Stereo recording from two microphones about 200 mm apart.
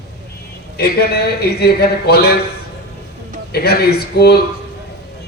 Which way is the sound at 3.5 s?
50° left (ahead or behind).